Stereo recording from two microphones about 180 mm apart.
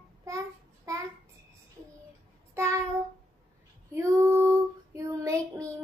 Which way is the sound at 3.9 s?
15° right (ahead or behind).